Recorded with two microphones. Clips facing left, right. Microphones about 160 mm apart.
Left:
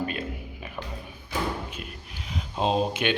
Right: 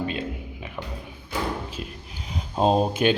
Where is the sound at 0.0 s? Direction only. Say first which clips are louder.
Right 2 dB; 25° right (ahead or behind).